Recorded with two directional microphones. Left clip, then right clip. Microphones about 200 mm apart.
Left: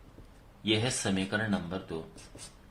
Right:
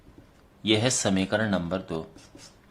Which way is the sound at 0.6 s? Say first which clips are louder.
Right 6 dB; 45° right (ahead or behind).